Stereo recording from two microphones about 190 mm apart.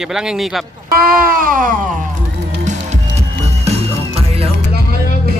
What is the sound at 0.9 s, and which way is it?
Speech, 50° right (ahead or behind).